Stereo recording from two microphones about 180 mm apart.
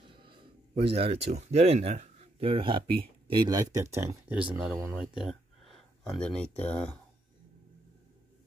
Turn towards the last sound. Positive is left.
turn(degrees=5)  # may be behind; listen again after turning